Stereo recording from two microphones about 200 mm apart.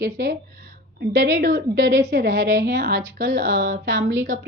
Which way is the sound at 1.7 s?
60° right (ahead or behind).